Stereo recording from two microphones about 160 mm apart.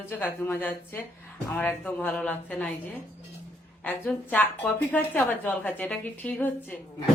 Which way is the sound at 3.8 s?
10° left (ahead or behind).